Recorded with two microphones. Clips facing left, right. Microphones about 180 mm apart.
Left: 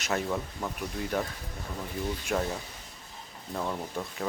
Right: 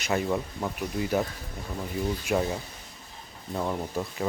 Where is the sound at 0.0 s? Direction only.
Centre (ahead or behind).